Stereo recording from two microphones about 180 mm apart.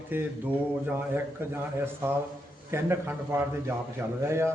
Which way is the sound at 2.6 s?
15° right (ahead or behind).